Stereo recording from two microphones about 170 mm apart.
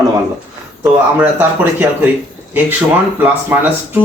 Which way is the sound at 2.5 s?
10° right (ahead or behind).